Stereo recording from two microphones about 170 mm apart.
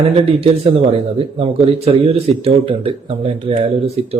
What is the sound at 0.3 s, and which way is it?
Speech, 35° right (ahead or behind).